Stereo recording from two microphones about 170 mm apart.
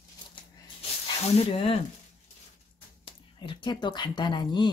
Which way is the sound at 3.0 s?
30° left (ahead or behind).